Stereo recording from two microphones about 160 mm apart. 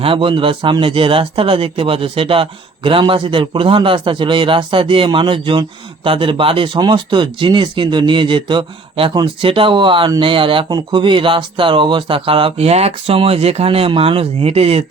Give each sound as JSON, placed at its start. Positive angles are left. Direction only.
{"t": 0.0, "sound": "speech", "side_deg": -35}